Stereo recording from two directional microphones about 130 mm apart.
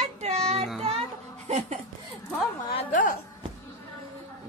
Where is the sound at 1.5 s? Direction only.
55° right (ahead or behind).